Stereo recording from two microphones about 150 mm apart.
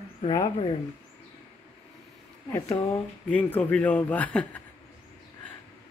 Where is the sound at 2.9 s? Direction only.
10° left (ahead or behind).